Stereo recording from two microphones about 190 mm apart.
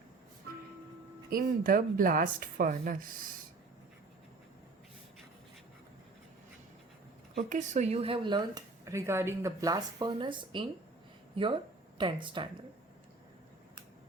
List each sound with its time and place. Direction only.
1.3 s speech: 50° right (ahead or behind)
7.3 s speech: 40° right (ahead or behind)